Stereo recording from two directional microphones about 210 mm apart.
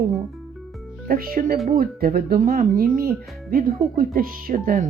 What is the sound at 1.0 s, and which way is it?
Speech, 45° right (ahead or behind).